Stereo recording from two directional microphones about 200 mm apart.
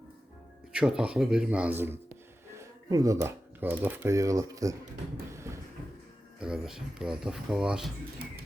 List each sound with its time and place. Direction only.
0.7 s speech: 5° right (ahead or behind)
5.3 s a sound: 15° right (ahead or behind)
6.4 s speech: 5° right (ahead or behind)